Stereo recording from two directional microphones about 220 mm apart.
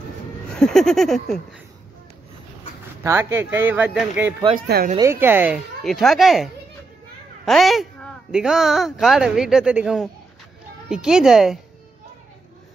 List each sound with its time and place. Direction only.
0.6 s speech: centre (ahead or behind)
3.0 s speech: 10° right (ahead or behind)
4.6 s speech: 45° right (ahead or behind)
4.9 s speech: 10° right (ahead or behind)